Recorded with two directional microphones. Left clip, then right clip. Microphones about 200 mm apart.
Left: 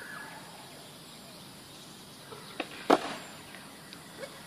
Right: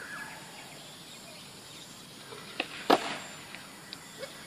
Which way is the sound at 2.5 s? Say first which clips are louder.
Even; 30° right (ahead or behind).